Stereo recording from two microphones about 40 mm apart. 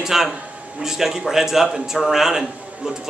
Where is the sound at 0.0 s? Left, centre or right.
Centre.